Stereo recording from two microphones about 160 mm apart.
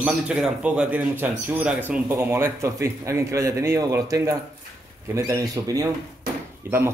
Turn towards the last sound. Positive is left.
turn(degrees=-15)  # may be behind; listen again after turning